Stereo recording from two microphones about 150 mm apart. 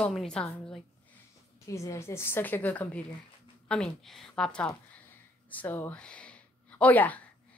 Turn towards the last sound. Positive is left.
turn(degrees=10)  # may be behind; listen again after turning